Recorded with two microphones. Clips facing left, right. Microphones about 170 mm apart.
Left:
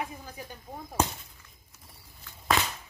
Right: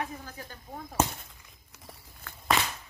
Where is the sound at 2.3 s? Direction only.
55° right (ahead or behind).